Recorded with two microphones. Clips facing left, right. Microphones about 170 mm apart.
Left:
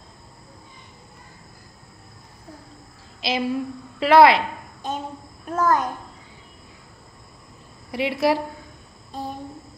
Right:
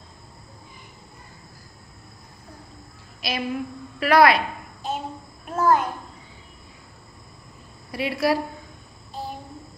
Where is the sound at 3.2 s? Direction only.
25° left (ahead or behind).